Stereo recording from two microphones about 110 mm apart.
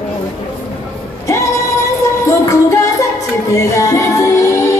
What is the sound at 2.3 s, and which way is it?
Music, 30° left (ahead or behind).